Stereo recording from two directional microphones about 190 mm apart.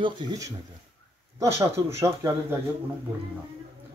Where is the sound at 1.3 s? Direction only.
15° right (ahead or behind).